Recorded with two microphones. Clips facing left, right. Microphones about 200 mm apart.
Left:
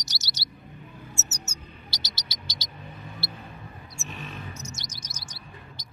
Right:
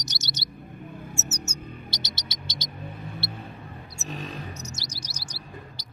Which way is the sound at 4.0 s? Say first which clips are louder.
Right 5 dB; 40° right (ahead or behind).